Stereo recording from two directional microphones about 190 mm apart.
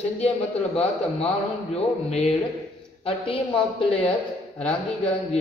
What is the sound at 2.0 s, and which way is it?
A man's voice, 35° left (ahead or behind).